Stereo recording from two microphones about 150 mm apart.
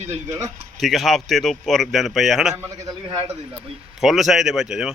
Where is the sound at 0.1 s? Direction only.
20° right (ahead or behind).